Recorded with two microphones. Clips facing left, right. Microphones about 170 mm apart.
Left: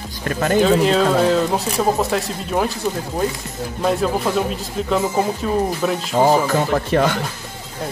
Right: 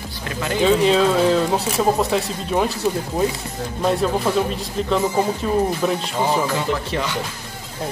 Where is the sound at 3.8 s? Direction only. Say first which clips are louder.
Even; centre (ahead or behind).